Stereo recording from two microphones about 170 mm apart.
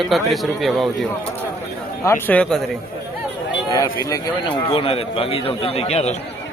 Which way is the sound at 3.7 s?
20° left (ahead or behind).